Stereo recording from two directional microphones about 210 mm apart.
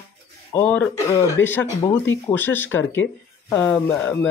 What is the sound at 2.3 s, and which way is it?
Speech, 10° left (ahead or behind).